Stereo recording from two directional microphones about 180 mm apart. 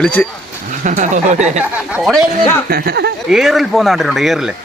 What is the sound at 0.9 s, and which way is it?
Speech, 45° right (ahead or behind).